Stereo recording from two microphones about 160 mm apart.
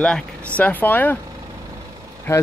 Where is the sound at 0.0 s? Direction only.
5° left (ahead or behind).